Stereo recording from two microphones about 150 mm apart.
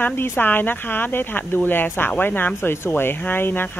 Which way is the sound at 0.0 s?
15° left (ahead or behind).